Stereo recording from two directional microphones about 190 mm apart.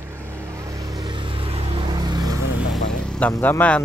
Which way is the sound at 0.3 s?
15° right (ahead or behind).